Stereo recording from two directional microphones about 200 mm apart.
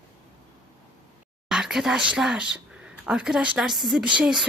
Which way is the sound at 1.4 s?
5° right (ahead or behind).